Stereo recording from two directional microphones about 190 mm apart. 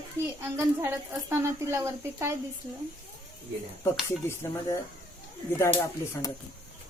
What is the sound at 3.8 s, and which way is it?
Speech, 15° left (ahead or behind).